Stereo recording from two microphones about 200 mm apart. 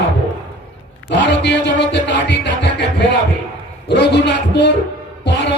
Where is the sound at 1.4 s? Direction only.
60° left (ahead or behind).